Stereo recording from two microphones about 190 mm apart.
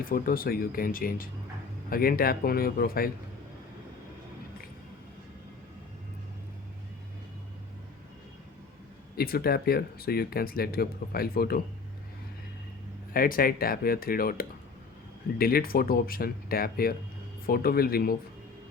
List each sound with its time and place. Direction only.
0.0 s speech: 50° left (ahead or behind)
9.1 s speech: 55° left (ahead or behind)
13.1 s speech: 50° left (ahead or behind)